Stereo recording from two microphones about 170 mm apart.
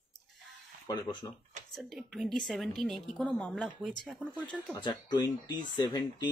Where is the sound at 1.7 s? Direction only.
Centre (ahead or behind).